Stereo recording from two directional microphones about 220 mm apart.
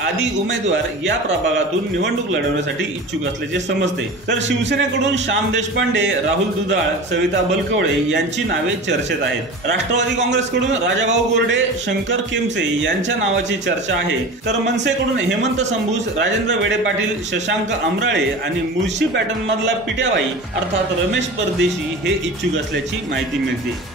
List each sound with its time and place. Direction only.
0.0 s speech: 55° right (ahead or behind)
3.5 s speech: 55° right (ahead or behind)
8.1 s speech: 55° right (ahead or behind)
16.2 s speech: 55° right (ahead or behind)
18.9 s speech: 55° right (ahead or behind)
21.1 s speech: 55° right (ahead or behind)